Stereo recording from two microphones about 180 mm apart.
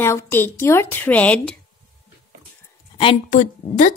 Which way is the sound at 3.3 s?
45° left (ahead or behind).